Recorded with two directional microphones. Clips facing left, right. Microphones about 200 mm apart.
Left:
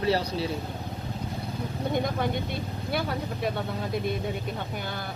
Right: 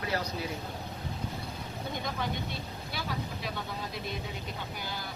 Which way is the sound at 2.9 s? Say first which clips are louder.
Left 8 dB; 55° left (ahead or behind).